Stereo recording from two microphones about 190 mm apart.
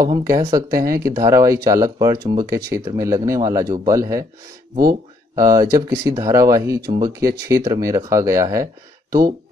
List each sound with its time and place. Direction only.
0.0 s speech: 15° right (ahead or behind)
5.3 s speech: 20° right (ahead or behind)